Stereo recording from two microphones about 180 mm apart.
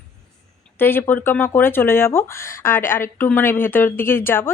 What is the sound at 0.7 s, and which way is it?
Speech, 10° left (ahead or behind).